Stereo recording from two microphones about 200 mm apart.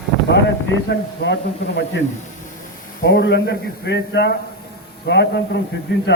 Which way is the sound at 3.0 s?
55° left (ahead or behind).